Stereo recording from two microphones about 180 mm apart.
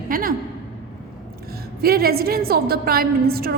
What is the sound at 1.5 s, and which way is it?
A woman's voice, 55° right (ahead or behind).